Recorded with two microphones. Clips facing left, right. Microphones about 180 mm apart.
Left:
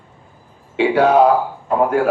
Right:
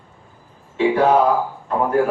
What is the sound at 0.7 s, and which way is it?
A man's voice, 75° left (ahead or behind).